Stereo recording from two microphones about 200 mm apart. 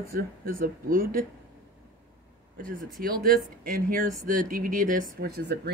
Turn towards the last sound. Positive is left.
turn(degrees=-55)  # may be behind; listen again after turning